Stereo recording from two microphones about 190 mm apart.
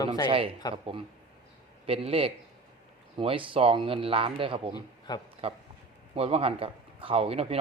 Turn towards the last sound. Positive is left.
turn(degrees=-30)  # may be behind; listen again after turning